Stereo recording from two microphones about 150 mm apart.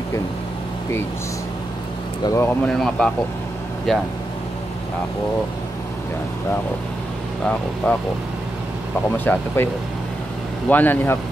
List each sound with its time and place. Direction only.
2.2 s speech: 20° left (ahead or behind)
2.6 s speech: 5° left (ahead or behind)
7.4 s speech: 10° left (ahead or behind)
9.1 s speech: 15° left (ahead or behind)
10.7 s speech: 10° left (ahead or behind)